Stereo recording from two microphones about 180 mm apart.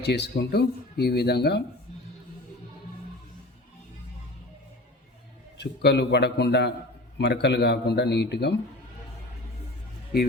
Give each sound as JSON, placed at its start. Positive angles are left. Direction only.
{"t": 0.0, "sound": "speech", "side_deg": 70}
{"t": 5.5, "sound": "a man's voice", "side_deg": 70}